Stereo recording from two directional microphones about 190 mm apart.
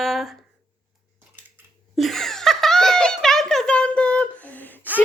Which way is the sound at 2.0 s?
Centre (ahead or behind).